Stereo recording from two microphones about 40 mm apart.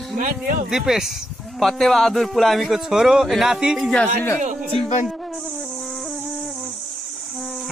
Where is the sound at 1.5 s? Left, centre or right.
Centre.